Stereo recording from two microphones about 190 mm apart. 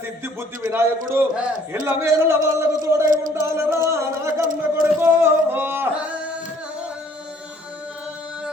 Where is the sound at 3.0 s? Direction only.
45° right (ahead or behind).